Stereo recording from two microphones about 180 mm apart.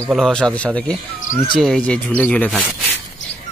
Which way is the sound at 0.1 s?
5° left (ahead or behind).